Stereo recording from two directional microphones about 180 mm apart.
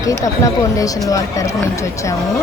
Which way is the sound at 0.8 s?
20° left (ahead or behind).